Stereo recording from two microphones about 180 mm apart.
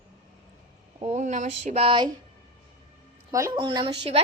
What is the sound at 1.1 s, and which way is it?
Speech, 40° right (ahead or behind).